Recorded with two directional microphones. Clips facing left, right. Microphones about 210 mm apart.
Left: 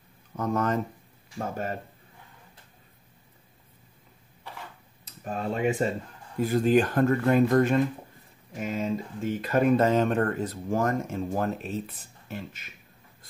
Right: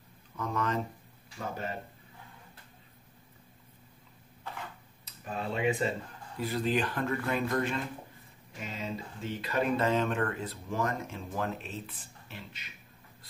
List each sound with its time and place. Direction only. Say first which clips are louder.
0.4 s speech: left 6 dB; 45° left (ahead or behind)
5.0 s speech: left 5 dB; 45° left (ahead or behind)